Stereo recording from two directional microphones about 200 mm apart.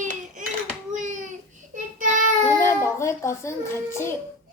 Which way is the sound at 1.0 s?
40° right (ahead or behind).